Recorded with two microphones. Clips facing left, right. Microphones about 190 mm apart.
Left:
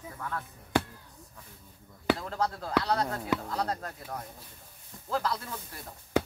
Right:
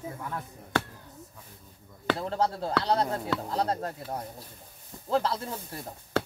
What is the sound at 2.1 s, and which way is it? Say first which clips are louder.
Speech: right 4 dB; 30° right (ahead or behind).